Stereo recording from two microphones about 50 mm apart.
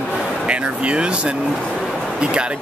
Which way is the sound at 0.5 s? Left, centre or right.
Right.